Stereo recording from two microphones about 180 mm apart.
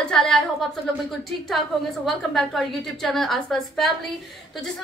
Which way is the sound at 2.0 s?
Centre (ahead or behind).